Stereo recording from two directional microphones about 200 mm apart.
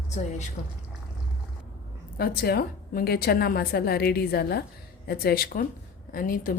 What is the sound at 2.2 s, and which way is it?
A woman's voice, 50° left (ahead or behind).